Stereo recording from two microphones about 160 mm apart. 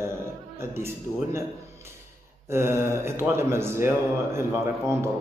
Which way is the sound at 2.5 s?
15° right (ahead or behind).